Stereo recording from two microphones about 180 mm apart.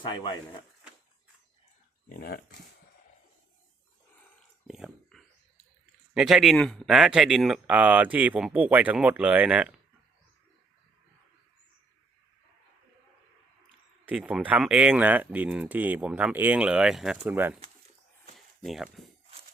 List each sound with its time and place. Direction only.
0.0 s speech: 25° left (ahead or behind)
4.6 s speech: centre (ahead or behind)
14.0 s speech: 5° right (ahead or behind)
18.3 s a sound: centre (ahead or behind)